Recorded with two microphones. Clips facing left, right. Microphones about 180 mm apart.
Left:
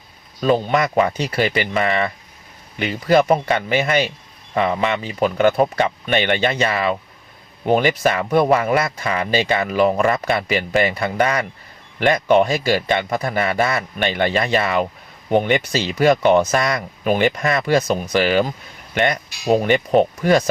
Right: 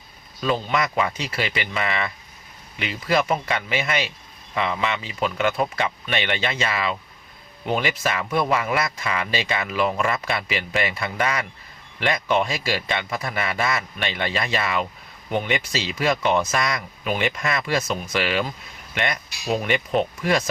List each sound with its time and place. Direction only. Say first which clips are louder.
0.4 s speech: left 6 dB; 35° left (ahead or behind)